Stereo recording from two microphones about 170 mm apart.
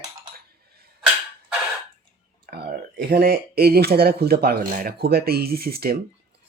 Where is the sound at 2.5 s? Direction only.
65° right (ahead or behind).